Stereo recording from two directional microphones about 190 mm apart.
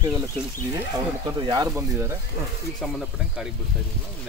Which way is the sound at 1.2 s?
20° right (ahead or behind).